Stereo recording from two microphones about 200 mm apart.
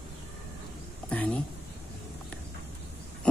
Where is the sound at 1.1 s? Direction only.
5° left (ahead or behind).